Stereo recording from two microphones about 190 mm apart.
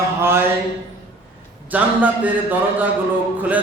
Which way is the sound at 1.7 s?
10° right (ahead or behind).